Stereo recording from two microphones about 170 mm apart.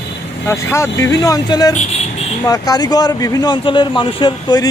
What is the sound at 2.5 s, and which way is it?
Speech, 20° left (ahead or behind).